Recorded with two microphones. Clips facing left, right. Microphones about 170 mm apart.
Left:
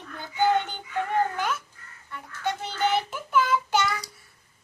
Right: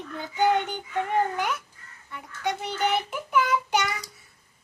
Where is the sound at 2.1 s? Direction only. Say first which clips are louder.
Even; 20° right (ahead or behind).